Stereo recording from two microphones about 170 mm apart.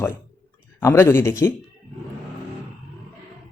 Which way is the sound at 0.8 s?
15° left (ahead or behind).